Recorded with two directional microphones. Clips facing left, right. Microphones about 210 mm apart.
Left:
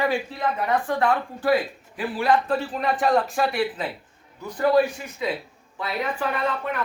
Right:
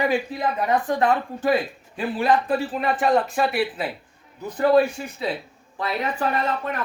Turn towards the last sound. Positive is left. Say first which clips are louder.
# right 1 dB
turn(degrees=-40)  # may be behind; listen again after turning